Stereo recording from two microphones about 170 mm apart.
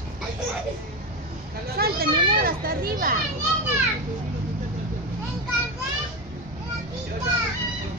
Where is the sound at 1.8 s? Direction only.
65° right (ahead or behind).